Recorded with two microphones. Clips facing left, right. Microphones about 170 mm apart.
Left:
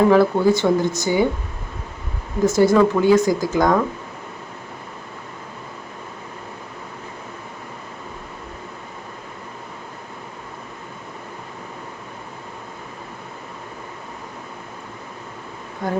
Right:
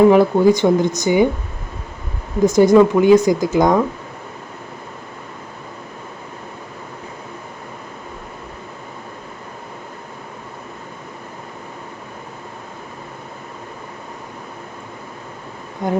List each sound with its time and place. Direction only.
0.1 s speech: 15° right (ahead or behind)
2.4 s speech: 20° right (ahead or behind)
15.8 s bee: 20° right (ahead or behind)